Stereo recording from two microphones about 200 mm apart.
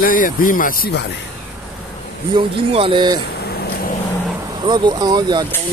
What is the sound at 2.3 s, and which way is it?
Speech, 25° right (ahead or behind).